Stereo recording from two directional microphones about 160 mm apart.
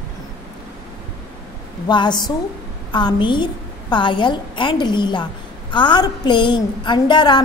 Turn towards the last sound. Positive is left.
turn(degrees=30)  # may be behind; listen again after turning